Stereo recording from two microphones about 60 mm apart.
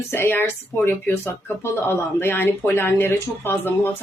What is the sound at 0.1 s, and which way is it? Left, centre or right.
Speech, left.